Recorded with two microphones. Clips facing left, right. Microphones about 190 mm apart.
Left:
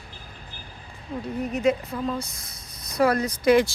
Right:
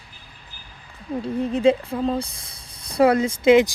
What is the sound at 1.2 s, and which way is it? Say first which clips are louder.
Speech: right 5 dB; 30° right (ahead or behind).